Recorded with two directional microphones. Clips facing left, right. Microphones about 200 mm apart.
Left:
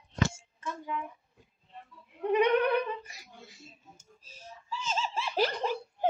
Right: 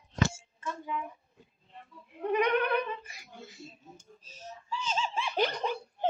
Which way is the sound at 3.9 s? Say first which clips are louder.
Right 4 dB; 10° left (ahead or behind).